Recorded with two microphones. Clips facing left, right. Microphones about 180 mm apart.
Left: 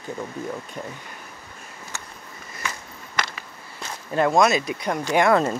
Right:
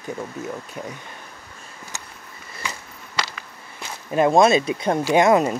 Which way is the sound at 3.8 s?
15° right (ahead or behind).